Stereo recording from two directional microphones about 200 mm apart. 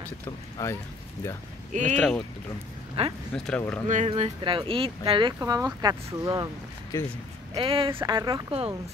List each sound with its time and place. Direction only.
0.6 s speech: 15° left (ahead or behind)
1.7 s speech: 35° right (ahead or behind)
2.0 s speech: 5° left (ahead or behind)
3.0 s speech: 30° right (ahead or behind)
3.3 s speech: 5° left (ahead or behind)
3.8 s speech: 35° right (ahead or behind); by 6.5 s 20° right (ahead or behind)
6.9 s speech: 15° left (ahead or behind)
7.5 s speech: 25° right (ahead or behind)